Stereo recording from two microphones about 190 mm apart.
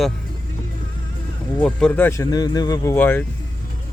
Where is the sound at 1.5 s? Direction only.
5° left (ahead or behind).